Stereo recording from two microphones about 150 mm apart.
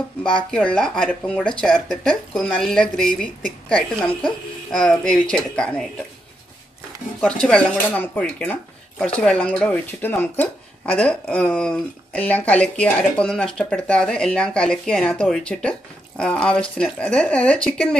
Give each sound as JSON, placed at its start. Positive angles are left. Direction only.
{"t": 0.2, "sound": "speech", "side_deg": 35}
{"t": 0.5, "sound": "speech", "side_deg": 5}
{"t": 7.2, "sound": "speech", "side_deg": 5}